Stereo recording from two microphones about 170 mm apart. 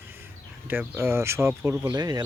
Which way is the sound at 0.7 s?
15° right (ahead or behind).